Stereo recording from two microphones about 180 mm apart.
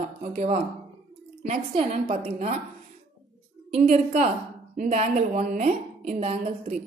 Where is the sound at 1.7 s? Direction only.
35° right (ahead or behind).